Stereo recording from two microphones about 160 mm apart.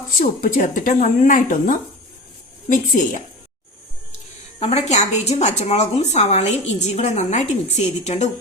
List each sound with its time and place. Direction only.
0.2 s speech: 55° left (ahead or behind)
4.6 s a woman's voice: 40° left (ahead or behind)